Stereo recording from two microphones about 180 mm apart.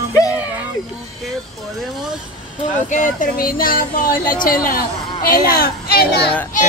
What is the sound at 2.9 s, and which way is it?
Speech, 45° left (ahead or behind).